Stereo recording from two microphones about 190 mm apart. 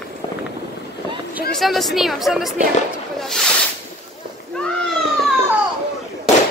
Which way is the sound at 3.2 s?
Centre (ahead or behind).